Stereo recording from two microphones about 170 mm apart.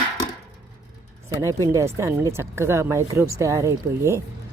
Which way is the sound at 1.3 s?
20° right (ahead or behind).